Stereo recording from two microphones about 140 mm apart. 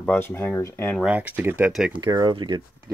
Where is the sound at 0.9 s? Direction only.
5° right (ahead or behind).